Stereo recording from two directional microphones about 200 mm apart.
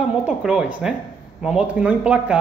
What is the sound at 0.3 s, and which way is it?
A man's voice, 5° right (ahead or behind).